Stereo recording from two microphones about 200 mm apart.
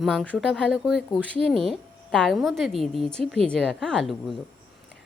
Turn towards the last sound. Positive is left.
turn(degrees=0)  # may be behind; listen again after turning